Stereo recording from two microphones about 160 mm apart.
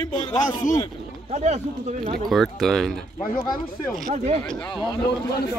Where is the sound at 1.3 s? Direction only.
45° right (ahead or behind).